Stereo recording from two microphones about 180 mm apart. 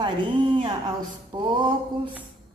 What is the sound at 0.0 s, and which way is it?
Speech, 25° right (ahead or behind).